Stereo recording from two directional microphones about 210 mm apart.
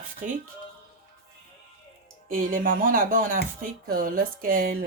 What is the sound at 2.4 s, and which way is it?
Speech, 40° right (ahead or behind).